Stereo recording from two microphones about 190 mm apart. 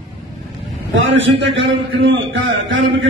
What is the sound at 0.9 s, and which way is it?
Speech, 80° right.